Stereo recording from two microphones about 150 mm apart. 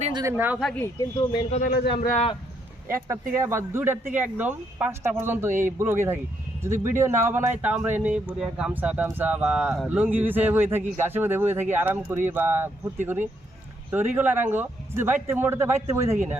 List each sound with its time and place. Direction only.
0.1 s speech: 25° right (ahead or behind)
0.3 s speech: 10° right (ahead or behind)
0.6 s speech: 10° left (ahead or behind)
0.9 s speech: 25° left (ahead or behind)
1.6 s speech: 80° left
2.0 s a man's voice: 50° left (ahead or behind)
2.8 s speech: 20° right (ahead or behind)